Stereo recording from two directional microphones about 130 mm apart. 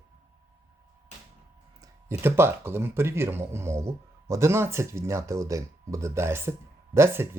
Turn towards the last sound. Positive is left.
turn(degrees=-20)  # may be behind; listen again after turning